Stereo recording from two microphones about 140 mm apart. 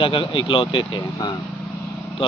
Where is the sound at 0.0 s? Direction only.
35° left (ahead or behind).